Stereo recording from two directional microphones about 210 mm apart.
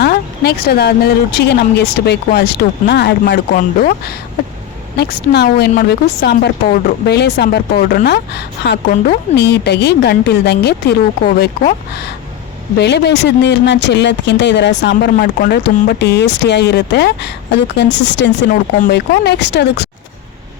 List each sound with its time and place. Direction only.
0.0 s speech: 50° left (ahead or behind)